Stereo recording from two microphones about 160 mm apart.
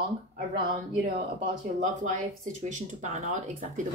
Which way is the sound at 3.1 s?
50° right (ahead or behind).